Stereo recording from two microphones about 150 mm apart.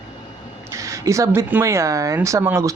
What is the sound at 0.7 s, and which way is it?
Speech, 20° right (ahead or behind).